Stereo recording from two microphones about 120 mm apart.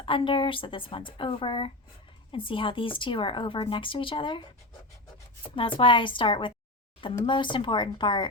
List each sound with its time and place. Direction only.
0.0 s speech: 45° left (ahead or behind)
5.5 s speech: 45° left (ahead or behind)